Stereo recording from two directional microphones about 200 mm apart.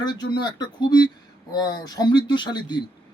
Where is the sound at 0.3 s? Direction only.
20° left (ahead or behind).